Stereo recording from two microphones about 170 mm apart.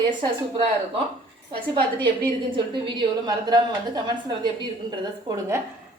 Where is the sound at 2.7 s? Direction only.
25° right (ahead or behind).